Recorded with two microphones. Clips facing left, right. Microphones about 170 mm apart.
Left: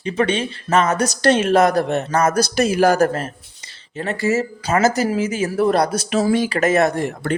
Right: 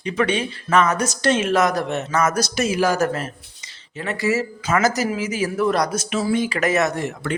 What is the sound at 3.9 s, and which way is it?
Speech, 30° left (ahead or behind).